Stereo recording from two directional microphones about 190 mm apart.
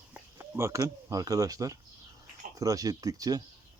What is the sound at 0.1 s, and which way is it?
Speech, 15° right (ahead or behind).